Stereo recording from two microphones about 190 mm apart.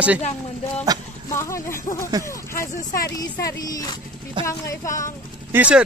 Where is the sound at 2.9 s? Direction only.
50° left (ahead or behind).